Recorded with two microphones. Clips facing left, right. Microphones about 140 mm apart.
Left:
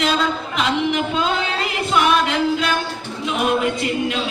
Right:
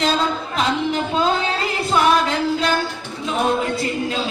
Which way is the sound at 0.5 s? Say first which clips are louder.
Left 1 dB; 35° right (ahead or behind).